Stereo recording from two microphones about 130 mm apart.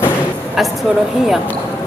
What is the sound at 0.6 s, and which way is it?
Speech, centre (ahead or behind).